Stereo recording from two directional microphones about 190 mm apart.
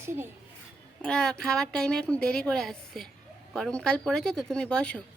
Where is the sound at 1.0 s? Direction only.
5° left (ahead or behind).